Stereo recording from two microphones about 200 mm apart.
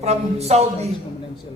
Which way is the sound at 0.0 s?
30° right (ahead or behind).